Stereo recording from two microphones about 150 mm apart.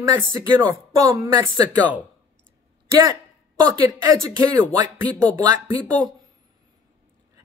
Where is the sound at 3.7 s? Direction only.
25° right (ahead or behind).